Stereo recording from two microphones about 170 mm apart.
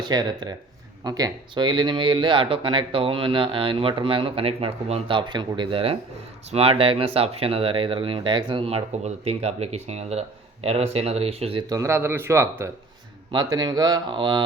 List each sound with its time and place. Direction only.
0.0 s speech: 25° right (ahead or behind)
11.7 s speech: 15° right (ahead or behind)